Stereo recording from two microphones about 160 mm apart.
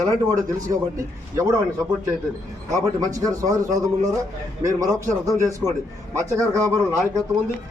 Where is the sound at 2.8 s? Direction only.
20° right (ahead or behind).